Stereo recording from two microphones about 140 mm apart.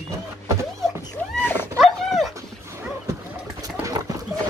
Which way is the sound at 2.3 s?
20° right (ahead or behind).